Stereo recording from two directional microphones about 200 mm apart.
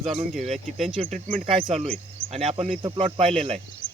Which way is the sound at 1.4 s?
30° right (ahead or behind).